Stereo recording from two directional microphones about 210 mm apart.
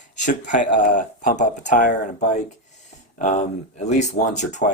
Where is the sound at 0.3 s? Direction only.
35° left (ahead or behind).